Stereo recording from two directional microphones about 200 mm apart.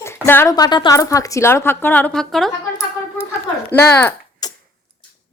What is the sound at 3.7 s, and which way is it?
Speech, 10° left (ahead or behind).